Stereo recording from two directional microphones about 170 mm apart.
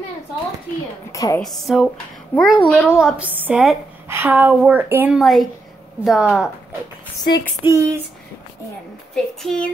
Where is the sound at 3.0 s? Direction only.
10° right (ahead or behind).